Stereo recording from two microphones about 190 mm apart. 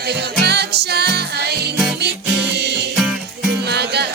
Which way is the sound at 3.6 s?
60° right (ahead or behind).